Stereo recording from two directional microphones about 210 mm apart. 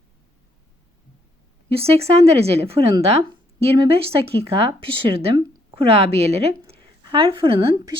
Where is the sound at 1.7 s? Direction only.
30° right (ahead or behind).